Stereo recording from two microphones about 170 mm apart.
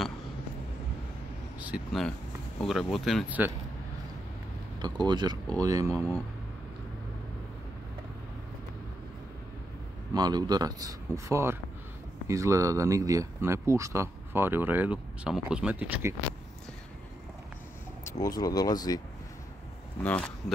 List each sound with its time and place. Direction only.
1.6 s vehicle: 10° right (ahead or behind)
2.6 s speech: centre (ahead or behind)
3.3 s speech: 10° right (ahead or behind)
4.7 s speech: 25° right (ahead or behind)
10.1 s speech: 25° right (ahead or behind)
18.2 s speech: 20° left (ahead or behind)
20.0 s speech: 5° left (ahead or behind)